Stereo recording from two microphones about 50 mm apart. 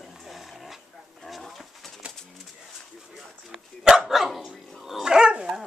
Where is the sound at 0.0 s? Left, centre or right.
Centre.